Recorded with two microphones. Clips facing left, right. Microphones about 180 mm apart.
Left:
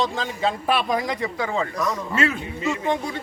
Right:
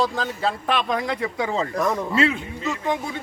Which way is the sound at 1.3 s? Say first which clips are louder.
Right 1 dB; 20° right (ahead or behind).